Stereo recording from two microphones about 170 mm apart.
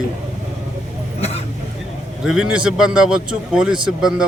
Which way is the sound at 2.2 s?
Centre (ahead or behind).